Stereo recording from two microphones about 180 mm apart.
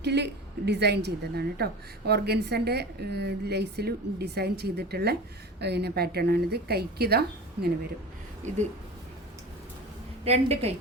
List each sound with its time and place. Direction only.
0.0 s a woman's voice: 70° right (ahead or behind)
8.4 s a woman's voice: 40° right (ahead or behind)
10.2 s a woman's voice: 35° right (ahead or behind)